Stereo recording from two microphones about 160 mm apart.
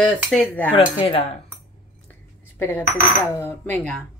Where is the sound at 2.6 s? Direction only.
15° left (ahead or behind).